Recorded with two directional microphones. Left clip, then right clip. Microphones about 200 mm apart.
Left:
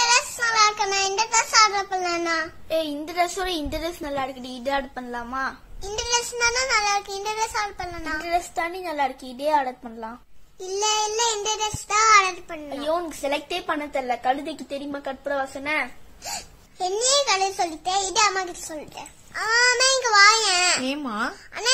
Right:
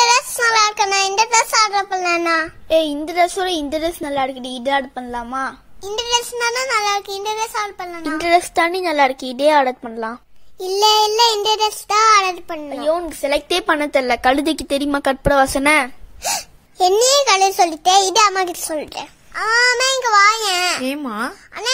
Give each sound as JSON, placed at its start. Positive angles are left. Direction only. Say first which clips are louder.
{"t": 0.0, "sound": "child singing", "louder": "right 6 dB", "side_deg": -40}
{"t": 7.2, "sound": "a child's voice", "louder": "right 4 dB", "side_deg": -25}
{"t": 8.2, "sound": "a child's voice", "louder": "right 11 dB", "side_deg": -45}
{"t": 10.6, "sound": "child singing", "louder": "right 10 dB", "side_deg": -35}
{"t": 13.3, "sound": "a woman's voice", "louder": "right 10 dB", "side_deg": -50}
{"t": 16.7, "sound": "a child's voice", "louder": "right 9 dB", "side_deg": -45}
{"t": 19.3, "sound": "a child's voice", "louder": "right 5 dB", "side_deg": -25}